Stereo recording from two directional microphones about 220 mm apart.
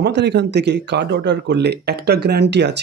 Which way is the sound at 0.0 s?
50° right (ahead or behind).